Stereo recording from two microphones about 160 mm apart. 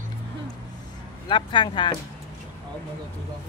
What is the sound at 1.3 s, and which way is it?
Speech, 30° left (ahead or behind).